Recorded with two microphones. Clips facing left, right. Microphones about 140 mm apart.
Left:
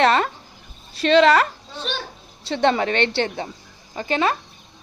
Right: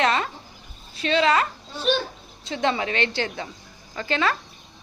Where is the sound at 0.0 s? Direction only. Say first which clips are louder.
Left 5 dB; 60° left (ahead or behind).